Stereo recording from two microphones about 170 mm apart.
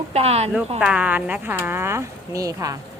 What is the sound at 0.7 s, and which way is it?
Speech, 5° right (ahead or behind).